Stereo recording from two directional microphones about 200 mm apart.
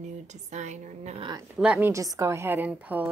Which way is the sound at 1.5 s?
10° right (ahead or behind).